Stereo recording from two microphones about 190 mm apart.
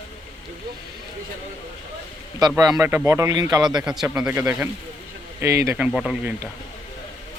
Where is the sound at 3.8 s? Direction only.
Centre (ahead or behind).